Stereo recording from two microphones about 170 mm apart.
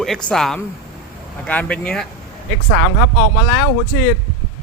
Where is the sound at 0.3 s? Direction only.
5° left (ahead or behind).